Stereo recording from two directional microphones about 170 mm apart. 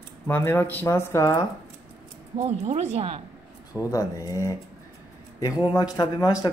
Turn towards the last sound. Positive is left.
turn(degrees=25)  # may be behind; listen again after turning